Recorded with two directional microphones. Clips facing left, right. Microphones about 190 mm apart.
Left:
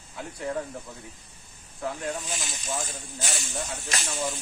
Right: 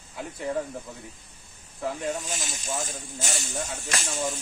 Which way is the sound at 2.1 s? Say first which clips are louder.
Right 1 dB; 45° right (ahead or behind).